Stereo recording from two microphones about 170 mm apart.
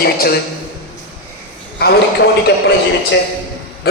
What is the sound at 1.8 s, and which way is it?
Speech, 70° left (ahead or behind).